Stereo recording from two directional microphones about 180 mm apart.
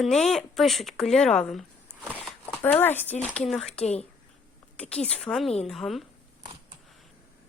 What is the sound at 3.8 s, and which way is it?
Speech, 35° left (ahead or behind).